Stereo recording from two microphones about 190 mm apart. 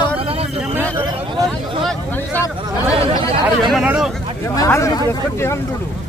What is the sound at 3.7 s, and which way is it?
Speech, centre (ahead or behind).